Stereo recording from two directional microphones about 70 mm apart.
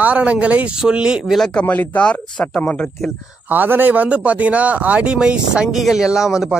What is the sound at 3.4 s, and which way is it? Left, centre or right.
A man's voice, right.